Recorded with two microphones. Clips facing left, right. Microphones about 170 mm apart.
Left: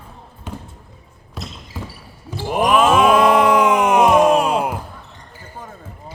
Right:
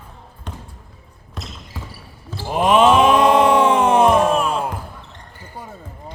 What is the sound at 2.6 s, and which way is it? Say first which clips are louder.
Groan: right 1 dB; 25° right (ahead or behind).